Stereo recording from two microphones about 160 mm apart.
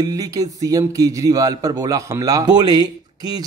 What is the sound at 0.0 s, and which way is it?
Speech, 20° right (ahead or behind).